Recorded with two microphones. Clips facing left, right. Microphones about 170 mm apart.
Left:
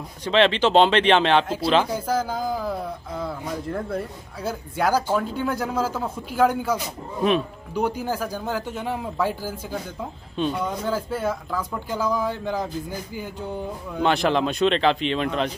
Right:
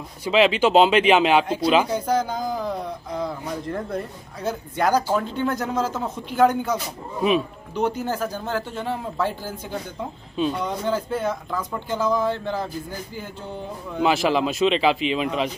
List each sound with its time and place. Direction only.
0.2 s speech: 10° right (ahead or behind)
1.9 s a man's voice: 5° left (ahead or behind)
13.9 s speech: centre (ahead or behind)